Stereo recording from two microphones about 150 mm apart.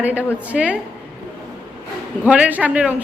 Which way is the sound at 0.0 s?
10° right (ahead or behind).